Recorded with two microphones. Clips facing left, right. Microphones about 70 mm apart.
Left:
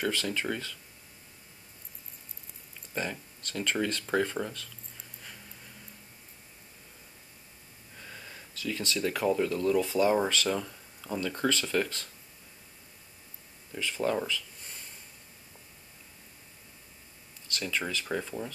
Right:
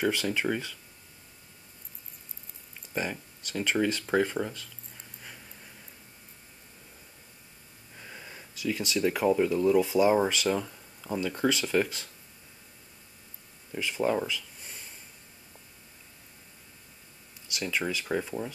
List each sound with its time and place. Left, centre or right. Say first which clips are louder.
0.0 s speech: right 3 dB; centre
2.9 s speech: right 2 dB; centre
8.0 s speech: right 1 dB; centre
13.7 s a sound: right 2 dB; centre
17.5 s speech: right 2 dB; centre